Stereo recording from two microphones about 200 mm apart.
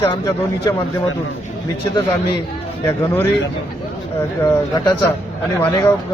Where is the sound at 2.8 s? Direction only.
10° left (ahead or behind).